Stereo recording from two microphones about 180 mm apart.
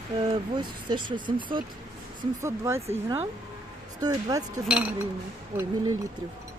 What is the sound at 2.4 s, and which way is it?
Speech, 15° right (ahead or behind).